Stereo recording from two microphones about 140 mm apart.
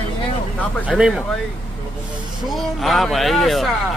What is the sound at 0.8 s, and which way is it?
Speech, 5° right (ahead or behind).